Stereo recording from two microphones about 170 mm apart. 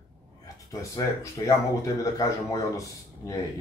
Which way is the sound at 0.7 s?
20° left (ahead or behind).